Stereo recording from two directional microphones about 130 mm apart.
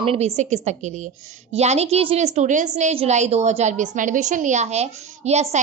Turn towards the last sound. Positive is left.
turn(degrees=-55)  # may be behind; listen again after turning